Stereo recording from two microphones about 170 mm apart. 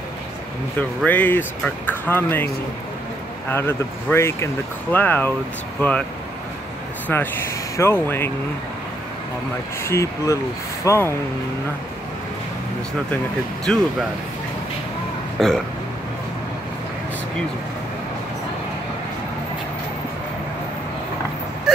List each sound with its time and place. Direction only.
0.7 s speech: 10° left (ahead or behind)
7.1 s speech: 15° left (ahead or behind)
9.8 s speech: 15° left (ahead or behind)
13.7 s speech: 5° left (ahead or behind)
15.3 s speech: centre (ahead or behind)